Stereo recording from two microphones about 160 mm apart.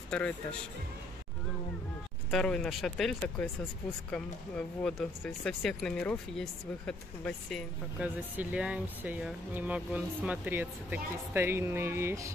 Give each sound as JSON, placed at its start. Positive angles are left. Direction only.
{"t": 0.1, "sound": "speech", "side_deg": 5}
{"t": 2.3, "sound": "speech", "side_deg": 5}
{"t": 8.0, "sound": "speech", "side_deg": -10}